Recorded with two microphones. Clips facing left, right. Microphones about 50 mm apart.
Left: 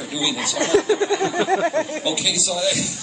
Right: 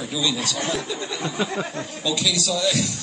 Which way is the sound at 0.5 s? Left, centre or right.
Left.